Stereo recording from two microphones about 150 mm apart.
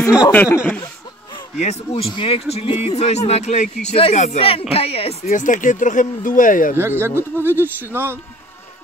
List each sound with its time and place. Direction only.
0.3 s speech: 10° left (ahead or behind)
1.6 s speech: 45° left (ahead or behind)
5.3 s speech: 60° left (ahead or behind)
6.8 s speech: 15° right (ahead or behind)